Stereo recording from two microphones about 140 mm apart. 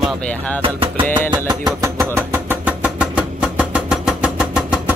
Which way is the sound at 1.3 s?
30° right (ahead or behind).